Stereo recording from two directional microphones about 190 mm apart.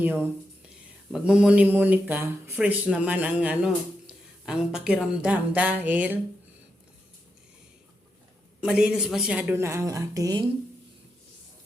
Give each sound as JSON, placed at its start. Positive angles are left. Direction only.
{"t": 0.0, "sound": "speech", "side_deg": -10}
{"t": 8.6, "sound": "speech", "side_deg": -5}